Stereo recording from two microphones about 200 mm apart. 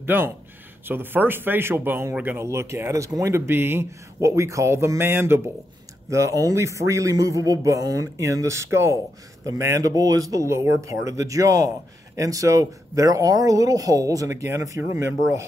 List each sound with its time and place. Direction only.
0.0 s speech: 10° right (ahead or behind)